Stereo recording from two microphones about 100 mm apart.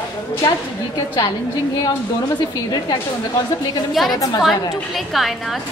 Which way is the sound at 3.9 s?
Centre (ahead or behind).